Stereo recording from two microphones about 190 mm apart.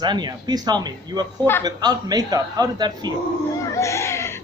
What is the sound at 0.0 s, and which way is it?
A man's voice, 20° right (ahead or behind).